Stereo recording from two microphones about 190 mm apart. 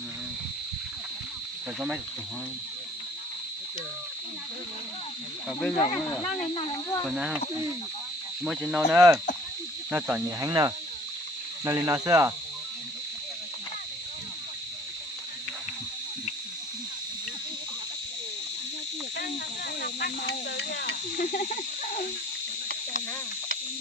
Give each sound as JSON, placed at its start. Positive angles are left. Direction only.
{"t": 5.5, "sound": "speech", "side_deg": 5}
{"t": 5.8, "sound": "speech", "side_deg": 30}
{"t": 7.0, "sound": "speech", "side_deg": 0}
{"t": 8.4, "sound": "speech", "side_deg": -5}
{"t": 9.0, "sound": "cricket", "side_deg": -15}
{"t": 19.1, "sound": "snake", "side_deg": 55}
{"t": 21.3, "sound": "cricket", "side_deg": 45}